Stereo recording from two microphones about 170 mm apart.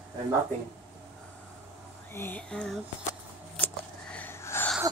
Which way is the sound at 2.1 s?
10° left (ahead or behind).